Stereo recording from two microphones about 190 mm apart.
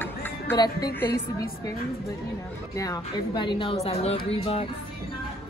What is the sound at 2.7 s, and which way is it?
A woman's voice, 20° left (ahead or behind).